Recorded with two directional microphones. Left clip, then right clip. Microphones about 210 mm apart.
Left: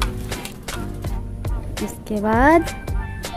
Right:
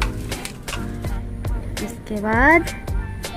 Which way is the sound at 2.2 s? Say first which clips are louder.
Even; 20° left (ahead or behind).